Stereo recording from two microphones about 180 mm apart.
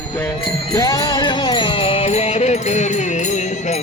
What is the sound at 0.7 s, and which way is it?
Music, 20° left (ahead or behind).